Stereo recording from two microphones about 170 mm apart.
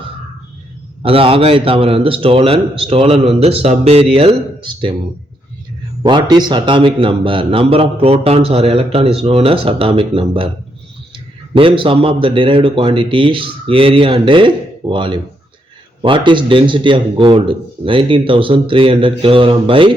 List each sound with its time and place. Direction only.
1.0 s a man's voice: 35° right (ahead or behind)
6.0 s a man's voice: 30° right (ahead or behind)